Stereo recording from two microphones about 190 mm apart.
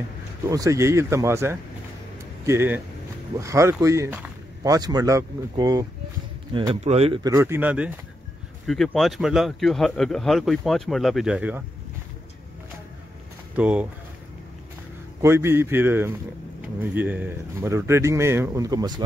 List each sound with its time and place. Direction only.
0.5 s speech: 15° right (ahead or behind); by 7.2 s 35° right (ahead or behind)
7.2 s speech: 15° right (ahead or behind)
13.6 s speech: 5° right (ahead or behind)
15.2 s speech: 15° right (ahead or behind)